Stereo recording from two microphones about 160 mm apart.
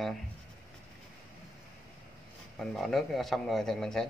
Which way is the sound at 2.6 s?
Centre (ahead or behind).